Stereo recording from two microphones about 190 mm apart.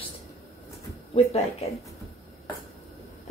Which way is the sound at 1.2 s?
35° left (ahead or behind).